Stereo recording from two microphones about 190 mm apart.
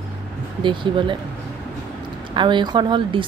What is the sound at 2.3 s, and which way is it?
Speech, 25° right (ahead or behind).